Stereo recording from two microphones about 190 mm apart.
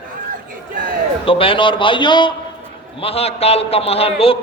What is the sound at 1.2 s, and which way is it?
A man's voice, 30° left (ahead or behind).